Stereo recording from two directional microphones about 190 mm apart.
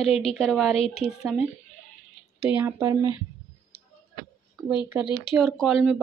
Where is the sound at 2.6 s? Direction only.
15° right (ahead or behind).